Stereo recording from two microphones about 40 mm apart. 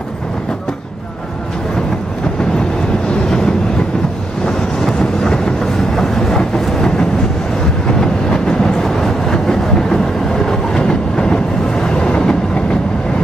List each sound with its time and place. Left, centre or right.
4.5 s vehicle: centre
5.9 s train: centre